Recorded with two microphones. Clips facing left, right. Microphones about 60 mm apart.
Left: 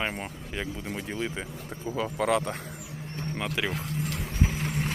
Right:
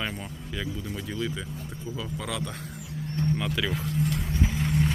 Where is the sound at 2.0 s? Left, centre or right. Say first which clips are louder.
Left 8 dB; left.